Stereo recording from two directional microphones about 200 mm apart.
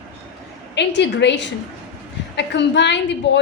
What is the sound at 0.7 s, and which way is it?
A woman's voice, 60° left (ahead or behind).